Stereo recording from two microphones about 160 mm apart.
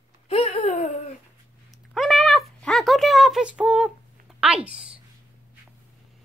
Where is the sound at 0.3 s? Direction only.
40° left (ahead or behind).